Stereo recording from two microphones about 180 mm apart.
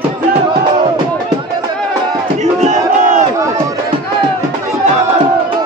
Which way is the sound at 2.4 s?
40° right (ahead or behind).